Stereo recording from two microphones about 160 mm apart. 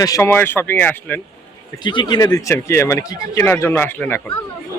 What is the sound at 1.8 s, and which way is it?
A man's voice, 30° left (ahead or behind).